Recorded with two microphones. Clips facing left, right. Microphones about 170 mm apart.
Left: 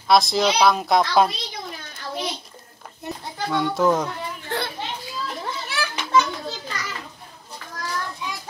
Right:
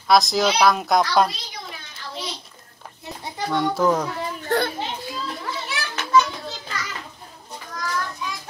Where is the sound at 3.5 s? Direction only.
Centre (ahead or behind).